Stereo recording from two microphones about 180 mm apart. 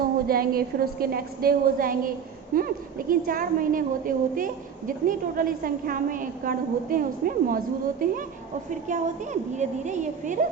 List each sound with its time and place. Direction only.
0.0 s a woman's voice: 55° right (ahead or behind)
8.7 s a woman's voice: 45° right (ahead or behind)